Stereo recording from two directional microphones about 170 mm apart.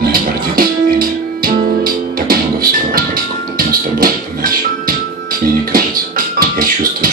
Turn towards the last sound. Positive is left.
turn(degrees=-55)  # may be behind; listen again after turning